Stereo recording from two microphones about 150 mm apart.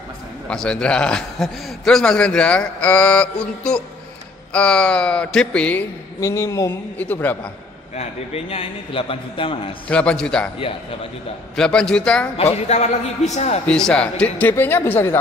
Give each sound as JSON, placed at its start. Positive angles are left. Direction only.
{"t": 0.5, "sound": "a man's voice", "side_deg": 5}
{"t": 6.2, "sound": "a man's voice", "side_deg": 20}
{"t": 7.9, "sound": "a man's voice", "side_deg": 45}
{"t": 9.8, "sound": "a man's voice", "side_deg": 5}
{"t": 11.5, "sound": "a man's voice", "side_deg": 5}
{"t": 12.4, "sound": "speech", "side_deg": 45}
{"t": 13.7, "sound": "a man's voice", "side_deg": 5}